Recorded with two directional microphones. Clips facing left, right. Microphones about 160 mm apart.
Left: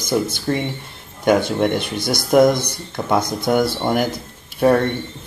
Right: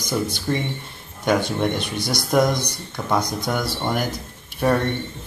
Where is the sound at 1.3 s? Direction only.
10° left (ahead or behind).